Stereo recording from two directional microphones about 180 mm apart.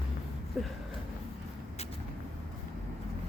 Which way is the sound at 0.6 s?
Centre (ahead or behind).